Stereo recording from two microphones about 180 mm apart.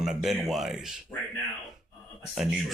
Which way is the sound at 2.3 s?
Centre (ahead or behind).